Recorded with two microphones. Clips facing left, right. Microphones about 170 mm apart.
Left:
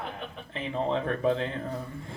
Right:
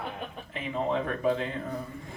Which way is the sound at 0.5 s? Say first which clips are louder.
Even; 30° left (ahead or behind).